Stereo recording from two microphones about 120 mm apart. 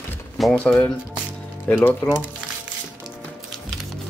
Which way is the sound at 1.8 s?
20° left (ahead or behind).